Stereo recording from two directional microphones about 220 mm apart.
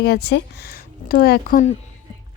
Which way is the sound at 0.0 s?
45° left (ahead or behind).